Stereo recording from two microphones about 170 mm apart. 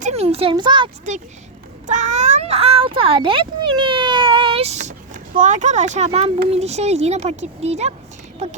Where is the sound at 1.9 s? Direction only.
45° right (ahead or behind).